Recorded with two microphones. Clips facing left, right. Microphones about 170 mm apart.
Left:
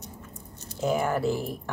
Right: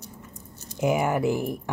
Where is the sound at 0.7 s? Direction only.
15° right (ahead or behind).